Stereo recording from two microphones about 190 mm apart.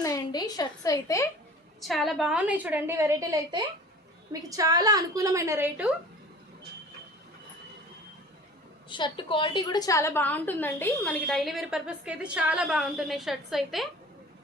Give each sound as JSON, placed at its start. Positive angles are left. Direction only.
{"t": 0.0, "sound": "a woman's voice", "side_deg": 20}
{"t": 1.8, "sound": "a woman's voice", "side_deg": 0}
{"t": 8.9, "sound": "a woman's voice", "side_deg": 25}